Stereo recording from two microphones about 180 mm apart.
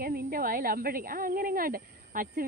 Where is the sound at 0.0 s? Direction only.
55° right (ahead or behind).